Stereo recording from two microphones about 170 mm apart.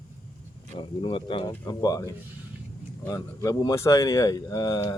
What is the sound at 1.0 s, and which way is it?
Speech, 30° left (ahead or behind).